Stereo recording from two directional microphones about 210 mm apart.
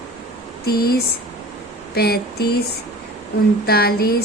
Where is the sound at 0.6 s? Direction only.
45° left (ahead or behind).